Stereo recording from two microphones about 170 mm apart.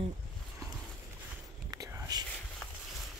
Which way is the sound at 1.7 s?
20° right (ahead or behind).